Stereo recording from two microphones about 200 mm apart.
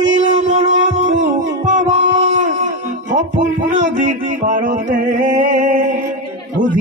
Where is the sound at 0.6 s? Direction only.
35° right (ahead or behind).